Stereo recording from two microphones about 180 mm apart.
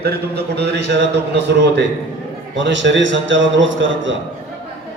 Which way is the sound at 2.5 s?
90° right.